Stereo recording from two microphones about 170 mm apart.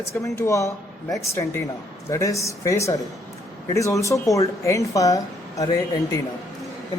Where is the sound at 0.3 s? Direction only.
15° left (ahead or behind).